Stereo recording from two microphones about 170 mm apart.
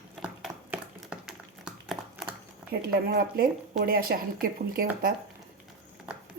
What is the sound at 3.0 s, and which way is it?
Speech, 60° right (ahead or behind).